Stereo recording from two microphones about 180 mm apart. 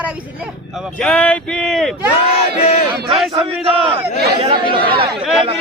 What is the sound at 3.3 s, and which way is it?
A man's voice, 30° right (ahead or behind).